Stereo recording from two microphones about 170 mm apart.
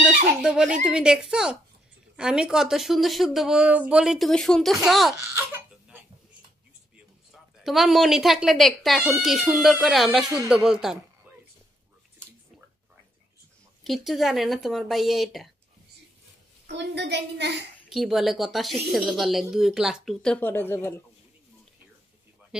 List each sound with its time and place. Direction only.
0.4 s speech: 5° right (ahead or behind)
5.3 s a sound: 15° right (ahead or behind)
7.6 s speech: centre (ahead or behind)
13.8 s speech: centre (ahead or behind)
16.6 s a woman's voice: 90° right
17.8 s speech: centre (ahead or behind)
22.5 s speech: 5° right (ahead or behind)